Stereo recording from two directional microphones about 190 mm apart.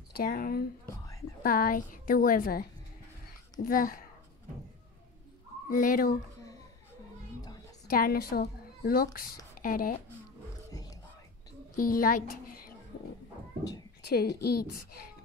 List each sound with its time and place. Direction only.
0.1 s a woman's voice: 50° left (ahead or behind)
3.6 s a woman's voice: 50° left (ahead or behind)
5.7 s a woman's voice: 45° left (ahead or behind)
7.9 s a woman's voice: 50° left (ahead or behind)
10.7 s whispering: 20° left (ahead or behind)
11.7 s speech: 50° left (ahead or behind)
14.0 s a woman's voice: 55° left (ahead or behind)